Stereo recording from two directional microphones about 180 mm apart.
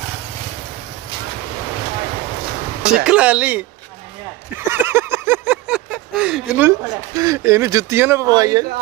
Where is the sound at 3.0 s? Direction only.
5° right (ahead or behind).